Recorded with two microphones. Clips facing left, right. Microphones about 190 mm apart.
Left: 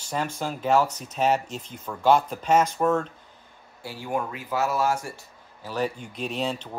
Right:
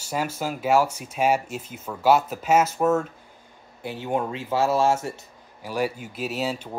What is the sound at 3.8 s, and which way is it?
Speech, 20° right (ahead or behind).